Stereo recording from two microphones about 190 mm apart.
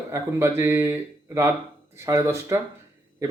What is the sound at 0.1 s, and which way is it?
Speech, 15° right (ahead or behind).